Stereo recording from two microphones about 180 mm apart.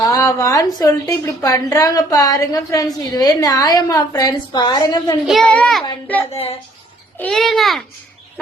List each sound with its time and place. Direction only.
0.0 s a woman's voice: 20° left (ahead or behind)
5.2 s a child's voice: centre (ahead or behind)
6.3 s a woman's voice: 35° left (ahead or behind)
7.2 s a child's voice: 5° left (ahead or behind)